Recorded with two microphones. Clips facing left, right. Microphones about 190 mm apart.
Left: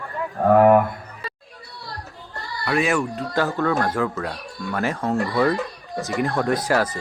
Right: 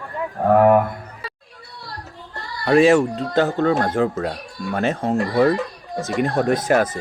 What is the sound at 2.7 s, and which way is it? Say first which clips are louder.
Speech: right 8 dB; 30° right (ahead or behind).